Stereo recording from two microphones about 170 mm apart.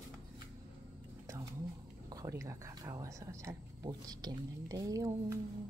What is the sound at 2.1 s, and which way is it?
Speech, 20° right (ahead or behind).